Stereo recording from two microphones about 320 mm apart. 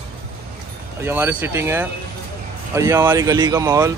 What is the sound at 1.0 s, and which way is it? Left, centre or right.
Speech, centre.